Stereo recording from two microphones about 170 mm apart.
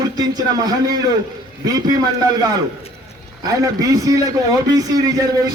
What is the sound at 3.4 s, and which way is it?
A man's voice, 20° right (ahead or behind).